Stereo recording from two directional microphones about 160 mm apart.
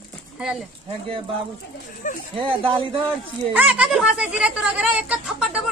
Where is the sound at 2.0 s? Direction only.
55° left (ahead or behind).